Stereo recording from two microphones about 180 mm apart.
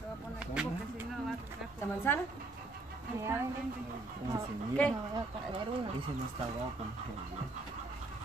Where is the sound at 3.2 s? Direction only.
15° right (ahead or behind).